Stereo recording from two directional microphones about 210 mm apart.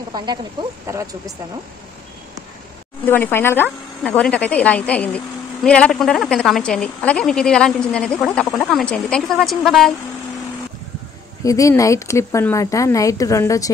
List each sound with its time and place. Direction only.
0.1 s speech: 20° right (ahead or behind)
3.1 s speech: 10° left (ahead or behind)
11.4 s speech: 15° left (ahead or behind)